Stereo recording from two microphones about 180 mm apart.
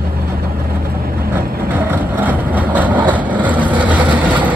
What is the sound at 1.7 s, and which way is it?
Vehicle, 10° right (ahead or behind).